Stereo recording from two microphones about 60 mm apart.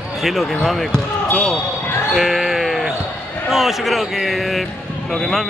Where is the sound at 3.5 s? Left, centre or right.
Centre.